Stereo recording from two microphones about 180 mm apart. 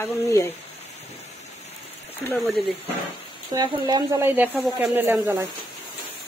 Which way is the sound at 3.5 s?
20° right (ahead or behind).